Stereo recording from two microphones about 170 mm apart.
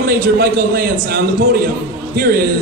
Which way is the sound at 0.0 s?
65° right (ahead or behind).